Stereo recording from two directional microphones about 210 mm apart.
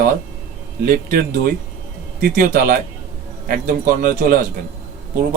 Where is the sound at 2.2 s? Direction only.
40° right (ahead or behind).